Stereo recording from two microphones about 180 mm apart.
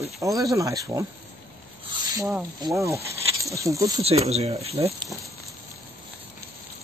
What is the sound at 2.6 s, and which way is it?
Speech, 15° right (ahead or behind).